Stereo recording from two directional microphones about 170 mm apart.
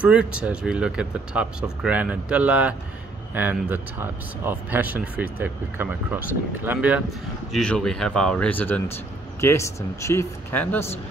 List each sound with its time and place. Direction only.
0.0 s speech: 5° right (ahead or behind)
7.5 s speech: 5° left (ahead or behind)